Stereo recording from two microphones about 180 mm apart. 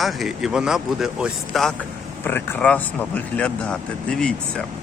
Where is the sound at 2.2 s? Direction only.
10° left (ahead or behind).